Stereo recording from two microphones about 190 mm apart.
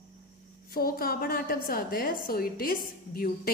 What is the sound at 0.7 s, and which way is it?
A woman's voice, 50° left (ahead or behind).